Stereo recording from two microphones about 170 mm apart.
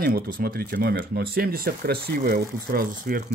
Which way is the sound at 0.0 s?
65° right (ahead or behind).